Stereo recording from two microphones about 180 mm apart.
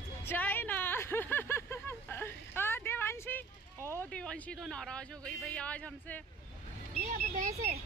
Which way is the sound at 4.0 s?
5° left (ahead or behind).